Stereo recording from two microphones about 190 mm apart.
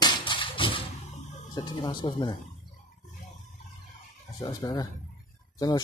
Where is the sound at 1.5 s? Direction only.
20° left (ahead or behind).